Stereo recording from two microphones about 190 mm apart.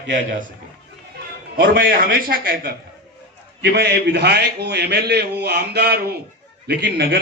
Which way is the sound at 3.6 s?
60° right (ahead or behind).